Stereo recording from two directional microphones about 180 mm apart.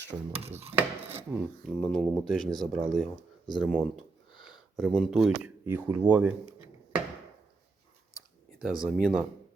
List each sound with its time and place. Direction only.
0.1 s dishes: 35° right (ahead or behind)
0.8 s chopping: 10° right (ahead or behind)
1.6 s speech: 5° left (ahead or behind)
4.3 s a sound: 25° left (ahead or behind)
4.8 s speech: centre (ahead or behind)
5.6 s chopping: 15° right (ahead or behind)
8.5 s speech: 5° right (ahead or behind)